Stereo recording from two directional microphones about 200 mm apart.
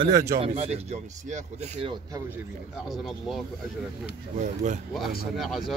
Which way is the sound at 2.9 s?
Centre (ahead or behind).